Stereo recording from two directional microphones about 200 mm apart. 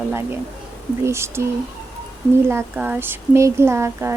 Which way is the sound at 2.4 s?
10° right (ahead or behind).